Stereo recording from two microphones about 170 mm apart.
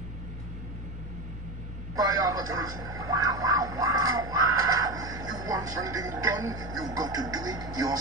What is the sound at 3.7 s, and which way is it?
Music, 20° right (ahead or behind).